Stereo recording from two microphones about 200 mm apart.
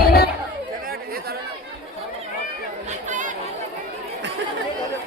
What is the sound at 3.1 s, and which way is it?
Chatter, 40° right (ahead or behind).